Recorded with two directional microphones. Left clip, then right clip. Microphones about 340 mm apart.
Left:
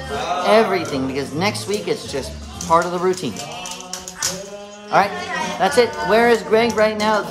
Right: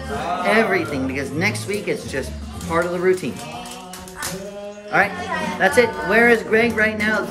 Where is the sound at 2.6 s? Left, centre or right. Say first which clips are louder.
Left 2 dB; centre.